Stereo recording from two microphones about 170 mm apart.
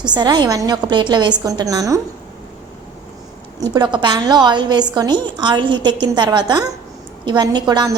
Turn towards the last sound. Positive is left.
turn(degrees=-25)  # may be behind; listen again after turning